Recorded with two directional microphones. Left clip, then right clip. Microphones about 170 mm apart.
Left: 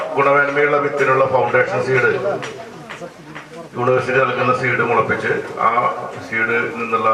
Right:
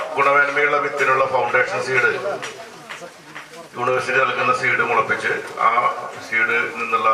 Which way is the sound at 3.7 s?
20° left (ahead or behind).